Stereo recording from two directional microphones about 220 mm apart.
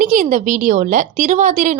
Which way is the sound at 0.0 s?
35° right (ahead or behind).